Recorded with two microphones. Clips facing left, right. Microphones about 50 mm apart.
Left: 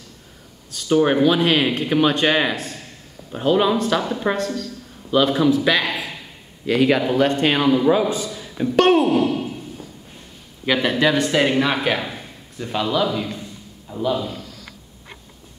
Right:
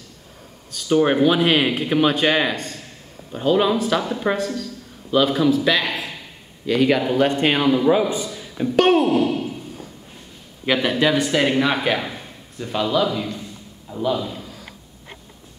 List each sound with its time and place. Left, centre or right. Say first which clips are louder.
0.7 s a man's voice: even; centre
10.6 s a man's voice: even; centre
14.3 s a sound: even; centre